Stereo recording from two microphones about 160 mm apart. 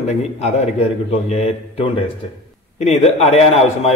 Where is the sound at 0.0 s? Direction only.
45° left (ahead or behind).